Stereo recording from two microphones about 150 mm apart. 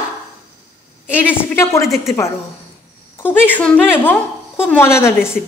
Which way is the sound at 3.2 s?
10° left (ahead or behind).